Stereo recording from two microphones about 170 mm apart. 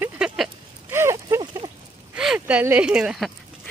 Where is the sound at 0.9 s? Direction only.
15° right (ahead or behind).